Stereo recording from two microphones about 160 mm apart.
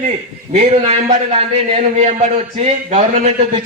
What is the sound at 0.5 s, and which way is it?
A man's voice, 45° right (ahead or behind).